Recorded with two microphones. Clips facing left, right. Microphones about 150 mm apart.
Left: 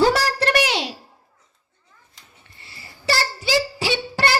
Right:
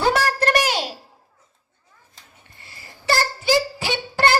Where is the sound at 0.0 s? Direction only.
55° right (ahead or behind).